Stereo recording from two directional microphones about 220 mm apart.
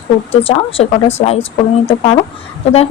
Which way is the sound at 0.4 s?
25° left (ahead or behind).